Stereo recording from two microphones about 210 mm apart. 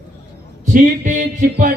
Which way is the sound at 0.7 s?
40° right (ahead or behind).